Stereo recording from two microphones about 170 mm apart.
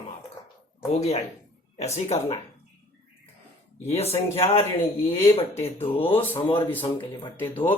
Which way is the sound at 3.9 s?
40° left (ahead or behind).